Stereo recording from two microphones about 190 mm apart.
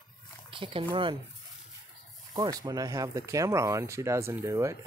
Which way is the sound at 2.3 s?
20° right (ahead or behind).